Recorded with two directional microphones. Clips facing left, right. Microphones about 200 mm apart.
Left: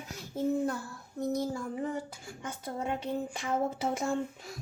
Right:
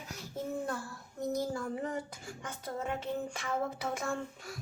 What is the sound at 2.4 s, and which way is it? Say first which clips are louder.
Music: left 2 dB; 10° left (ahead or behind).